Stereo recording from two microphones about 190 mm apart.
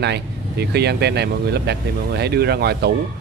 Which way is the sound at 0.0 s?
60° right (ahead or behind).